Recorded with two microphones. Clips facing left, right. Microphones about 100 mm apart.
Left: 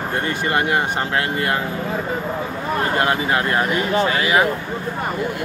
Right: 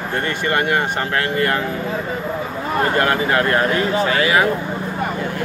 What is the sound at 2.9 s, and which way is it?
Speech, 20° left (ahead or behind).